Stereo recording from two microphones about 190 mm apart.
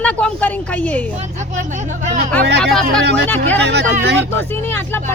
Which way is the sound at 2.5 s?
60° right (ahead or behind).